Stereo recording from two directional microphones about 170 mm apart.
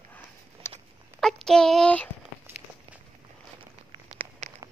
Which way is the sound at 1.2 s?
5° left (ahead or behind).